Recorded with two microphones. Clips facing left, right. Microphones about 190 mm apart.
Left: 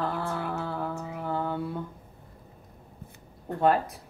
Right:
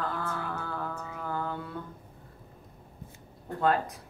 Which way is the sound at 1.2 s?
25° left (ahead or behind).